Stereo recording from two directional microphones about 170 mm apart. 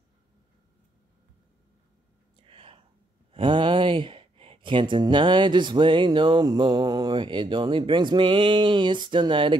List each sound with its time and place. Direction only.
2.4 s whispering: 30° right (ahead or behind)
3.3 s speech: 30° right (ahead or behind)